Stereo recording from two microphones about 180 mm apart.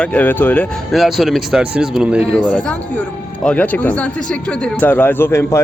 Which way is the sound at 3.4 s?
10° left (ahead or behind).